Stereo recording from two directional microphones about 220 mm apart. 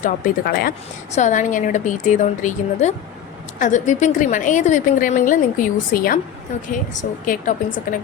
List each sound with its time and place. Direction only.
0.0 s a woman's voice: 45° left (ahead or behind)